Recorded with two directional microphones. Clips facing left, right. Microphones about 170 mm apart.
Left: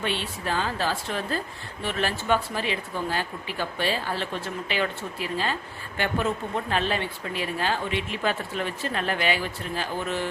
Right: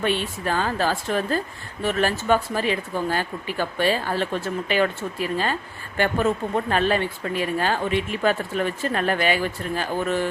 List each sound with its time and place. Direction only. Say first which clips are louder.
0.0 s speech: right 5 dB; 50° right (ahead or behind)
6.7 s speech: right 5 dB; 50° right (ahead or behind)